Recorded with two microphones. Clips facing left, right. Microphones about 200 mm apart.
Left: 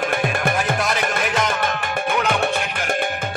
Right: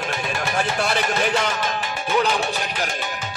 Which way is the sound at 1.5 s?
55° left (ahead or behind).